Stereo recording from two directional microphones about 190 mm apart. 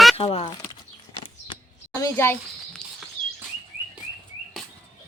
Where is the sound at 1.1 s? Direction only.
30° left (ahead or behind).